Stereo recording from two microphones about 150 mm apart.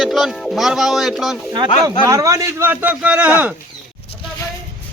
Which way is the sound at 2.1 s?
20° right (ahead or behind).